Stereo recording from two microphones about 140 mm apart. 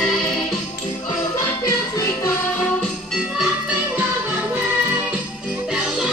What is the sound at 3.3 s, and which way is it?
Music, 5° right (ahead or behind).